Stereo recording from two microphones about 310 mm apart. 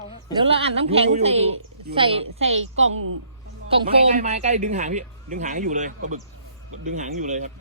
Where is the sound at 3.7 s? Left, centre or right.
Right.